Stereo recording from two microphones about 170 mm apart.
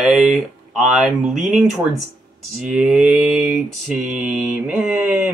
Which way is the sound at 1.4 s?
45° right (ahead or behind).